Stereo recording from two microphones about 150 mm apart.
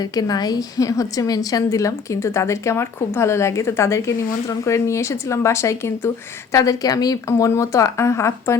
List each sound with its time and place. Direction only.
0.0 s a woman's voice: 25° left (ahead or behind)